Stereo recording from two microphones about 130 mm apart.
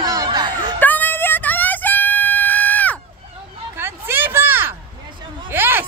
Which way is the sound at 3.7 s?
15° right (ahead or behind).